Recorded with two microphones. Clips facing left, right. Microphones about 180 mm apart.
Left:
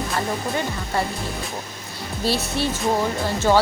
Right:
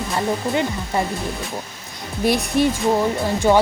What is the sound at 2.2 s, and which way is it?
Speech, 15° right (ahead or behind).